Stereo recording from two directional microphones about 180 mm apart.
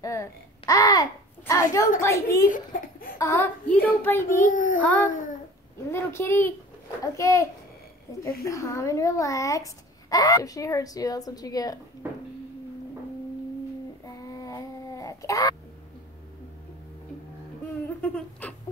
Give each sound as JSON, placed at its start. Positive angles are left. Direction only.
{"t": 0.0, "sound": "babbling", "side_deg": 20}
{"t": 2.0, "sound": "a woman's voice", "side_deg": 15}
{"t": 2.5, "sound": "baby laughter", "side_deg": 55}
{"t": 3.2, "sound": "a woman's voice", "side_deg": 15}
{"t": 4.5, "sound": "child singing", "side_deg": 45}
{"t": 4.8, "sound": "a woman's voice", "side_deg": 10}
{"t": 8.5, "sound": "a child's voice", "side_deg": 15}
{"t": 12.0, "sound": "a sound", "side_deg": -10}
{"t": 14.0, "sound": "a sound", "side_deg": 20}
{"t": 17.8, "sound": "a sound", "side_deg": 10}